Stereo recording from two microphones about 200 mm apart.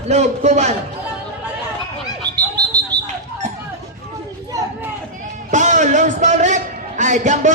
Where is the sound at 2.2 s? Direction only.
20° right (ahead or behind).